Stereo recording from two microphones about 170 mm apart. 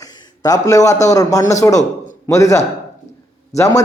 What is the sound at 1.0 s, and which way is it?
A man's voice, 20° left (ahead or behind).